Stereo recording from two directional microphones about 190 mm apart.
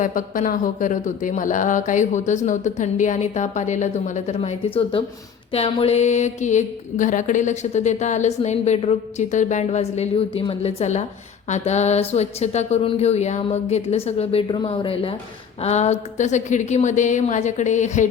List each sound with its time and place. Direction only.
0.0 s speech: 45° left (ahead or behind)